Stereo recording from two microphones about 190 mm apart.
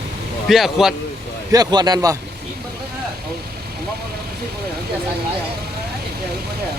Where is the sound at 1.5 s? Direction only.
20° right (ahead or behind).